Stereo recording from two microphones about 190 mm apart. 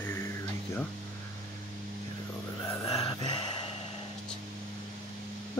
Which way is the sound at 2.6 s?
15° left (ahead or behind).